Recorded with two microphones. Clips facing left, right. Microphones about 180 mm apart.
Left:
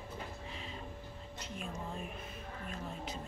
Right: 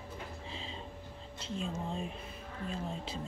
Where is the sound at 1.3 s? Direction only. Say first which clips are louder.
Right 6 dB; 25° right (ahead or behind).